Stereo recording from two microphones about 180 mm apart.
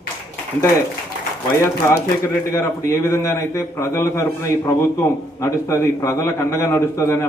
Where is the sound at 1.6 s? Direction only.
15° left (ahead or behind).